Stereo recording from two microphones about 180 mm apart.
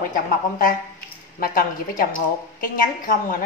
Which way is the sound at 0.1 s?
50° left (ahead or behind).